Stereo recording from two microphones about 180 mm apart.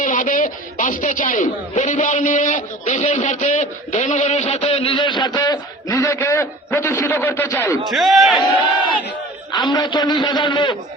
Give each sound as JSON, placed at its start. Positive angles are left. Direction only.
{"t": 0.0, "sound": "a man's voice", "side_deg": 50}
{"t": 7.9, "sound": "a man's voice", "side_deg": 0}
{"t": 9.5, "sound": "a man's voice", "side_deg": 25}